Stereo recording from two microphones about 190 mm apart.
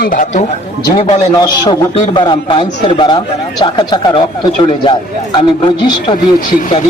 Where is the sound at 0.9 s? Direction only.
25° left (ahead or behind).